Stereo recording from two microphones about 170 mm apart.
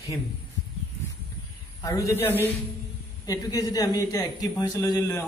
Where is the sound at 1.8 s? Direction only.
15° left (ahead or behind).